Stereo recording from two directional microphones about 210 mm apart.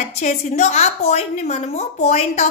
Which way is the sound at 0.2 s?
35° left (ahead or behind).